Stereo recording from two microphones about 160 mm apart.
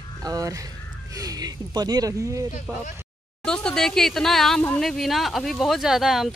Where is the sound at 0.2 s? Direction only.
20° right (ahead or behind).